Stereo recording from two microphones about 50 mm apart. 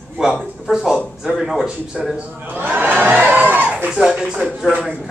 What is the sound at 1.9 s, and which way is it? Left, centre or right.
Speech, right.